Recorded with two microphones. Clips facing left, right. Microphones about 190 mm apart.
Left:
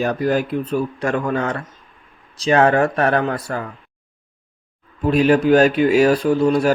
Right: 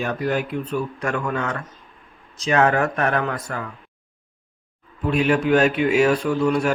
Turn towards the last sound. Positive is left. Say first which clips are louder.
# left 4 dB
turn(degrees=35)  # may be behind; listen again after turning